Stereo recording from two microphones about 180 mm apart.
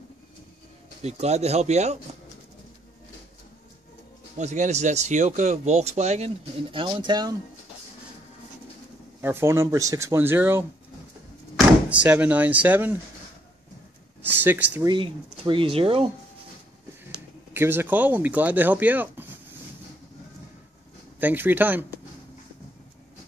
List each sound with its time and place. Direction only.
1.0 s speech: 35° right (ahead or behind)
4.4 s speech: 40° right (ahead or behind); by 7.3 s 25° right (ahead or behind)
9.2 s speech: 15° right (ahead or behind)
11.9 s speech: 10° right (ahead or behind)
14.2 s speech: 10° right (ahead or behind)
14.9 s speech: 25° right (ahead or behind)
17.6 s speech: 10° right (ahead or behind)
21.2 s speech: 10° right (ahead or behind)